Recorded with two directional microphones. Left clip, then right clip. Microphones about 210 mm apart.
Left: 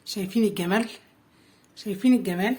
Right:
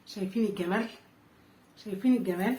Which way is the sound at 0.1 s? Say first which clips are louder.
Left 6 dB; 60° left (ahead or behind).